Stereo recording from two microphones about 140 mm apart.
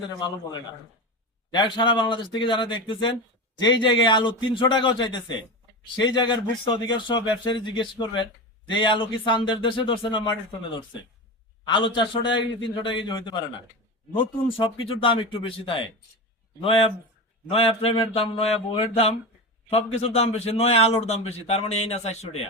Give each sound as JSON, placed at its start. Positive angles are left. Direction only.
{"t": 1.5, "sound": "speech", "side_deg": 35}
{"t": 11.6, "sound": "a man's voice", "side_deg": 35}